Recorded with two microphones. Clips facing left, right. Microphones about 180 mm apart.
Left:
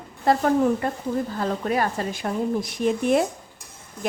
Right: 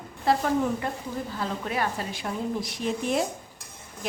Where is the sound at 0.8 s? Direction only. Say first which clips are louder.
Left 6 dB; 45° left (ahead or behind).